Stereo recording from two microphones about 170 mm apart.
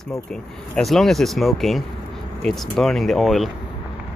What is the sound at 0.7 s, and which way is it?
Speech, centre (ahead or behind).